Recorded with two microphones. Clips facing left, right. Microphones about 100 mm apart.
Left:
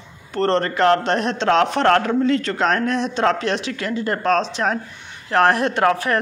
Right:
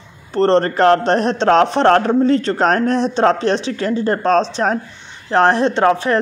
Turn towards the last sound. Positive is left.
turn(degrees=-25)  # may be behind; listen again after turning